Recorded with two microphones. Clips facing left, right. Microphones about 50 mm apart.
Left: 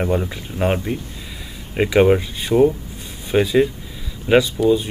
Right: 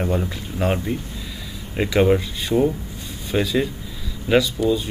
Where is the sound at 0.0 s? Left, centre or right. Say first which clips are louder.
Left 2 dB; centre.